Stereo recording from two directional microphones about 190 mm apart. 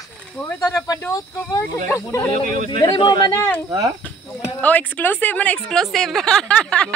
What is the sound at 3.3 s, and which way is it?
Speech, 10° left (ahead or behind).